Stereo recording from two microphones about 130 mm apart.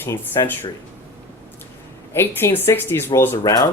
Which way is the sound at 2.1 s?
20° left (ahead or behind).